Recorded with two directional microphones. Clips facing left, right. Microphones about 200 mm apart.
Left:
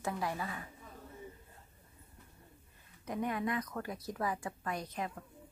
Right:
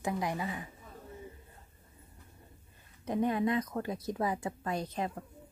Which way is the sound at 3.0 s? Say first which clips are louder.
Right 6 dB; 25° right (ahead or behind).